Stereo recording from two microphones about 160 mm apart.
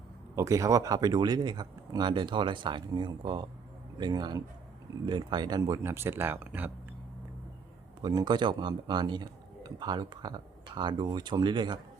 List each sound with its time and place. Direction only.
0.3 s speech: 20° right (ahead or behind)
8.0 s speech: 25° right (ahead or behind)